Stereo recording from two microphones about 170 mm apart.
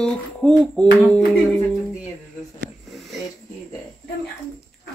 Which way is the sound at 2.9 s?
Centre (ahead or behind).